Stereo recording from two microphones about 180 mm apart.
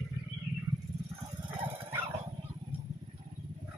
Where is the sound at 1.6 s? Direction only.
10° right (ahead or behind).